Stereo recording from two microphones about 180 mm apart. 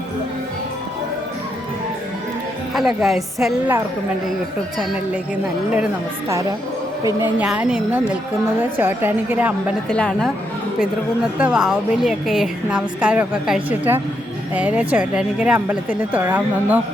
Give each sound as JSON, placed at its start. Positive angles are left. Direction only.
{"t": 2.7, "sound": "a woman's voice", "side_deg": 0}
{"t": 5.7, "sound": "a woman's voice", "side_deg": -10}
{"t": 9.9, "sound": "a woman's voice", "side_deg": 5}
{"t": 11.3, "sound": "a woman's voice", "side_deg": -5}